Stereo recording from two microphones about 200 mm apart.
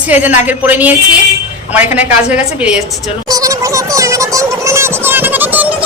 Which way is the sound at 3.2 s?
15° right (ahead or behind).